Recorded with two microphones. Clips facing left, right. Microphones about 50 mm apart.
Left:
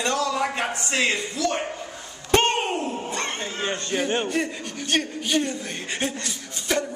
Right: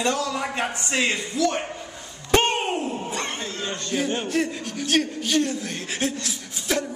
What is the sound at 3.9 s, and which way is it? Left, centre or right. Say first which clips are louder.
A man's voice: right 1 dB; centre.